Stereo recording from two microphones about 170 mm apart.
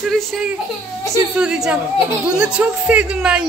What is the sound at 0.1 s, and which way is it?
A woman's voice, centre (ahead or behind).